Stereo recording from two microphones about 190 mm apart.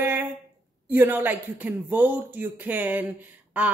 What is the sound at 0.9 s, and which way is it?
Speech, 10° right (ahead or behind).